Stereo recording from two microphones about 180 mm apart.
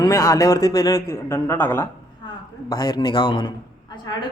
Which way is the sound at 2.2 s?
20° left (ahead or behind).